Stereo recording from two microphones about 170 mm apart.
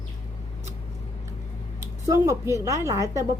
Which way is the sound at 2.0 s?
20° right (ahead or behind).